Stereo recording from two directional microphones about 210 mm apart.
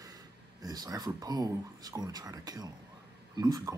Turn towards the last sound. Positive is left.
turn(degrees=-20)  # may be behind; listen again after turning